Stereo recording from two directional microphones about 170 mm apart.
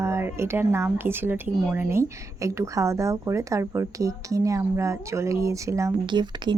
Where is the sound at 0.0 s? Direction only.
15° right (ahead or behind).